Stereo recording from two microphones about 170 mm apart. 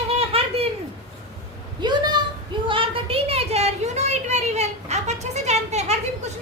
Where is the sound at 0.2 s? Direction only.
35° right (ahead or behind).